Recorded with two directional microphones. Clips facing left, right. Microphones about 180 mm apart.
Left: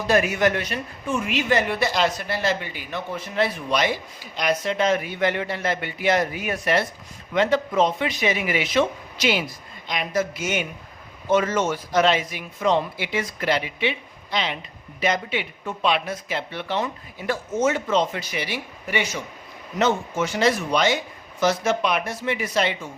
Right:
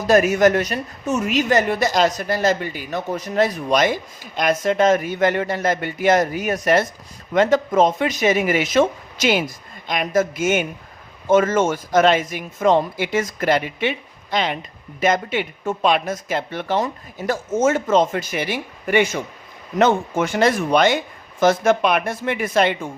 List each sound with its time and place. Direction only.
0.1 s a man's voice: 40° right (ahead or behind)